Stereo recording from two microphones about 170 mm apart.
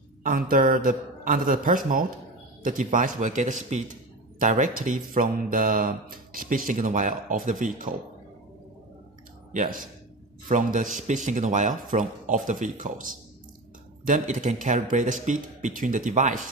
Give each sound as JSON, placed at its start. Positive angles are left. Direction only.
{"t": 0.2, "sound": "a man's voice", "side_deg": -55}
{"t": 9.5, "sound": "speech", "side_deg": -55}